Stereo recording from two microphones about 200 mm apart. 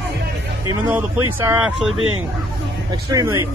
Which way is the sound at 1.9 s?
90° right.